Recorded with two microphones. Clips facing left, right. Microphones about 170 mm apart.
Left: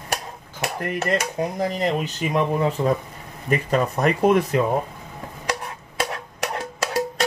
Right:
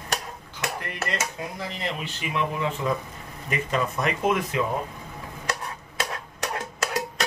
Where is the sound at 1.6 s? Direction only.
45° left (ahead or behind).